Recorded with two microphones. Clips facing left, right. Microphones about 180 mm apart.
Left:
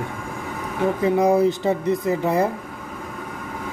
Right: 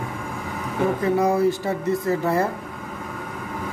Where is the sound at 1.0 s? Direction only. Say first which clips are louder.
Left 3 dB; 20° left (ahead or behind).